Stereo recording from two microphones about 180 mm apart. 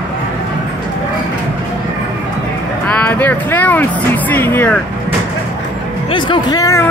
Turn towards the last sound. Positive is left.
turn(degrees=20)  # may be behind; listen again after turning